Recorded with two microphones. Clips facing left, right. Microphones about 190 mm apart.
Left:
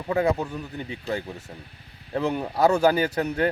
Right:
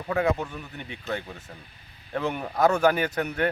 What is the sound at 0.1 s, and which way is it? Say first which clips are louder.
Speech: left 2 dB; 30° left (ahead or behind).